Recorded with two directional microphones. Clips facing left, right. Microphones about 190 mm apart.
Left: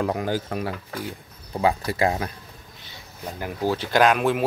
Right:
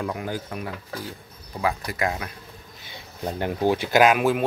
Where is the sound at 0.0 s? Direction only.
35° left (ahead or behind).